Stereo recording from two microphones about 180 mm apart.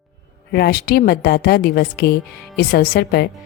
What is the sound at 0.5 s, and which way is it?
A woman's voice, 60° left (ahead or behind).